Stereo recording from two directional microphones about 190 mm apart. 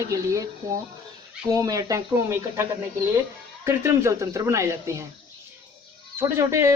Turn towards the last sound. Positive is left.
turn(degrees=-15)  # may be behind; listen again after turning